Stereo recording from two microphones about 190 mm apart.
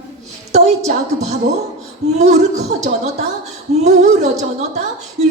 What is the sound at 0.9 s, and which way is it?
Speech, 35° right (ahead or behind).